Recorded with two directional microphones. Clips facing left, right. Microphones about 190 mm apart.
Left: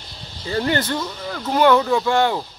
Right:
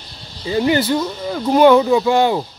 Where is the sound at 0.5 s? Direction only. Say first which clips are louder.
Right 5 dB; 10° right (ahead or behind).